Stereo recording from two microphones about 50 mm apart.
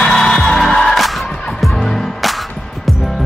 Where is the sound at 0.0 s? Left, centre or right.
Centre.